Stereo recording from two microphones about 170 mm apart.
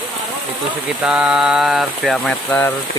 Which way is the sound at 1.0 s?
5° right (ahead or behind).